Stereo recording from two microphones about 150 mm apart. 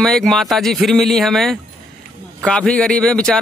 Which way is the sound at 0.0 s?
5° left (ahead or behind).